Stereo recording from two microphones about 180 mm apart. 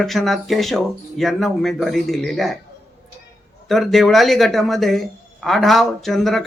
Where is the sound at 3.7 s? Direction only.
Centre (ahead or behind).